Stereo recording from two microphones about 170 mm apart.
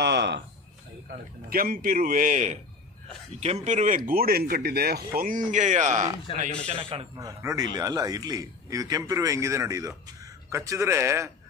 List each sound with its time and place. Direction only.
0.0 s a sound: 85° right
1.5 s speech: 55° right (ahead or behind)
6.3 s a man's voice: 30° left (ahead or behind)
6.8 s a man's voice: 35° right (ahead or behind)
7.2 s speech: 20° right (ahead or behind)